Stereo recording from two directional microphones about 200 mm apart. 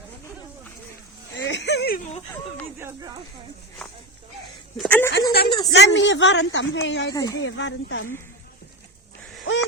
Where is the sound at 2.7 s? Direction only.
10° right (ahead or behind).